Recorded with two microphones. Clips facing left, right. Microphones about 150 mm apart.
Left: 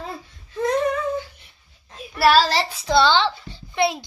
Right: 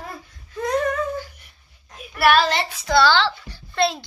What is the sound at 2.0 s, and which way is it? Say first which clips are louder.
Child singing: left 1 dB; 30° left (ahead or behind).